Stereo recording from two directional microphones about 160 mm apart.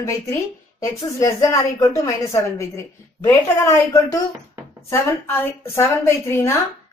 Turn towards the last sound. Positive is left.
turn(degrees=15)  # may be behind; listen again after turning